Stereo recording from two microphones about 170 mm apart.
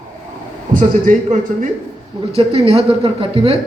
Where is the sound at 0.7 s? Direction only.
50° right (ahead or behind).